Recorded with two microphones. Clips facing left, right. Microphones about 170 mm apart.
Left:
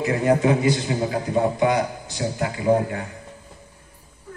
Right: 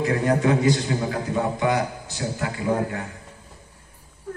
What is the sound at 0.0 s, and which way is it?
A man's voice, 15° left (ahead or behind).